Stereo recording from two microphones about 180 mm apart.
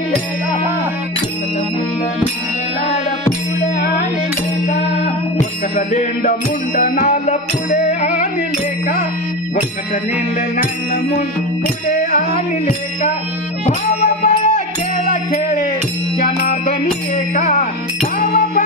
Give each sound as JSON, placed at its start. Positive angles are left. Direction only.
{"t": 4.6, "sound": "music", "side_deg": 55}
{"t": 5.8, "sound": "music", "side_deg": 45}
{"t": 13.7, "sound": "music", "side_deg": 40}
{"t": 17.4, "sound": "music", "side_deg": 45}